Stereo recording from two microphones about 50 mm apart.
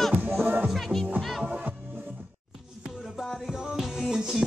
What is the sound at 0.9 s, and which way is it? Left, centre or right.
Music, centre.